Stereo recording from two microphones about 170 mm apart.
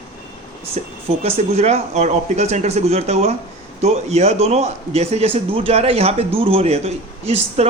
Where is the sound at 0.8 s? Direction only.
40° right (ahead or behind).